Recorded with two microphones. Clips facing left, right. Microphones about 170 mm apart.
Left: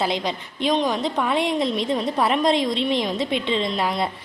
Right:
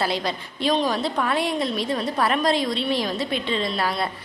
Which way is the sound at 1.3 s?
25° left (ahead or behind).